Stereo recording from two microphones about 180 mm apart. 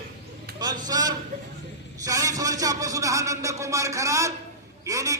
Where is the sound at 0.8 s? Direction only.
20° right (ahead or behind).